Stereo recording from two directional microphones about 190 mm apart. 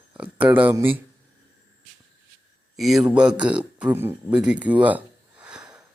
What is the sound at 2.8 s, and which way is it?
Speech, centre (ahead or behind).